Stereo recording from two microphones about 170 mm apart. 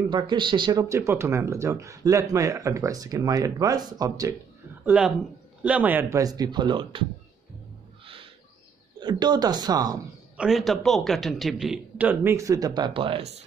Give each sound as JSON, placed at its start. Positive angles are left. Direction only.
{"t": 0.1, "sound": "speech", "side_deg": -30}
{"t": 4.8, "sound": "speech", "side_deg": -5}
{"t": 9.0, "sound": "speech", "side_deg": -25}
{"t": 10.3, "sound": "a man's voice", "side_deg": -5}